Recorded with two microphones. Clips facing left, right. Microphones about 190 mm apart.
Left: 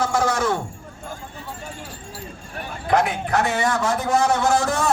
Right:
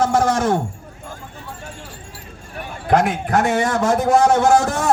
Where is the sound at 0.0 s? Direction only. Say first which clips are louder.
Right 4 dB; 45° right (ahead or behind).